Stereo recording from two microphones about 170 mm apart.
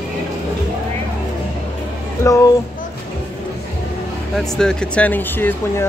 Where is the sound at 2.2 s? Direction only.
15° left (ahead or behind).